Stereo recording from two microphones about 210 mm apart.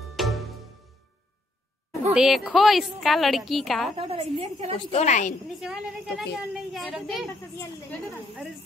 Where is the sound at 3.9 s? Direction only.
25° right (ahead or behind).